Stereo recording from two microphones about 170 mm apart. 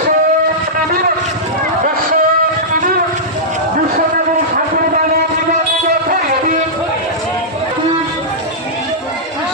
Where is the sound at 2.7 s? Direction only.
55° right (ahead or behind).